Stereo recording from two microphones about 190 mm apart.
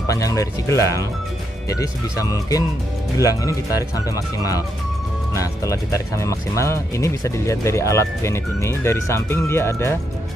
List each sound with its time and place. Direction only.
0.0 s speech: 15° left (ahead or behind)